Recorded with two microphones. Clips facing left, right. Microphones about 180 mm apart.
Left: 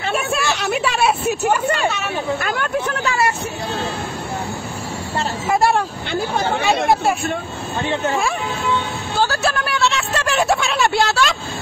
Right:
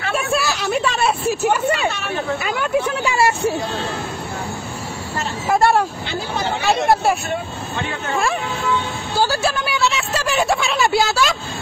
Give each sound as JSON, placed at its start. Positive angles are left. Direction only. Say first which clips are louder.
{"t": 0.1, "sound": "a sound", "louder": "right 1 dB", "side_deg": 0}
{"t": 1.4, "sound": "a woman's voice", "louder": "right 1 dB", "side_deg": -5}
{"t": 3.2, "sound": "speech", "louder": "right 7 dB", "side_deg": -25}
{"t": 5.5, "sound": "a woman's voice", "louder": "right 1 dB", "side_deg": 0}
{"t": 6.3, "sound": "speech", "louder": "even", "side_deg": 55}
{"t": 9.1, "sound": "a woman's voice", "louder": "right 1 dB", "side_deg": -5}